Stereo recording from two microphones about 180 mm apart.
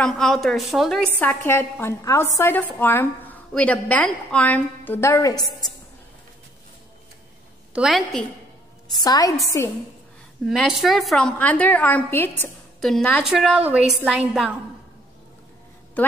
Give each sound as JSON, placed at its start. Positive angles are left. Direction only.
{"t": 0.0, "sound": "a woman's voice", "side_deg": 0}
{"t": 1.4, "sound": "a woman's voice", "side_deg": 10}
{"t": 7.7, "sound": "a woman's voice", "side_deg": 0}
{"t": 8.9, "sound": "a woman's voice", "side_deg": 20}
{"t": 10.4, "sound": "a woman's voice", "side_deg": 0}
{"t": 16.0, "sound": "a woman's voice", "side_deg": 10}